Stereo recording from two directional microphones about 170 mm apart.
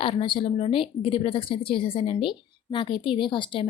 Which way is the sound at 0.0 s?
30° left (ahead or behind).